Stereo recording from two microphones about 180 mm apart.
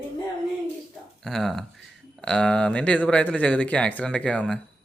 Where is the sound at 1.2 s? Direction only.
Centre (ahead or behind).